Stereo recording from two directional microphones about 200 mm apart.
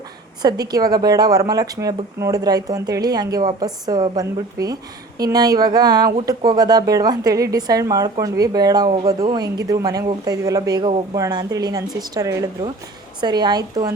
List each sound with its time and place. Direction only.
0.4 s a woman's voice: 20° right (ahead or behind)